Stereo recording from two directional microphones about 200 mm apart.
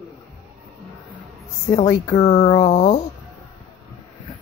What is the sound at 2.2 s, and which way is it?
Speech, 35° left (ahead or behind).